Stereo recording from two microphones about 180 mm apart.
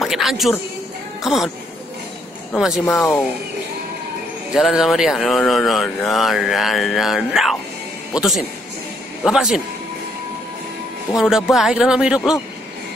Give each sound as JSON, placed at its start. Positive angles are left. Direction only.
{"t": 0.0, "sound": "music", "side_deg": 0}
{"t": 1.2, "sound": "speech", "side_deg": 0}
{"t": 2.5, "sound": "speech", "side_deg": 0}
{"t": 4.6, "sound": "speech", "side_deg": 0}
{"t": 11.1, "sound": "speech", "side_deg": 0}